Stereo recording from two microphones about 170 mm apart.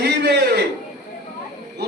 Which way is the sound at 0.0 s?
75° right (ahead or behind).